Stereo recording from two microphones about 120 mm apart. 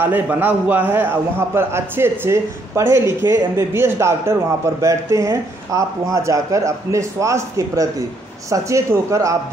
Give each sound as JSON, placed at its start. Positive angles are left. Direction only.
{"t": 0.0, "sound": "a man's voice", "side_deg": -15}